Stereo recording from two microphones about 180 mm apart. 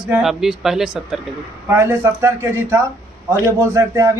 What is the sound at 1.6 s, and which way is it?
A man's voice, 15° right (ahead or behind).